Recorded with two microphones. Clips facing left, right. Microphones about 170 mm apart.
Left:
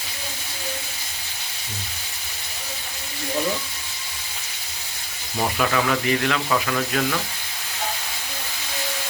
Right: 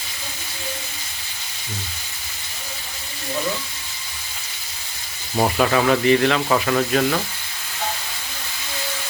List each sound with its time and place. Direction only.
5.4 s speech: 35° right (ahead or behind)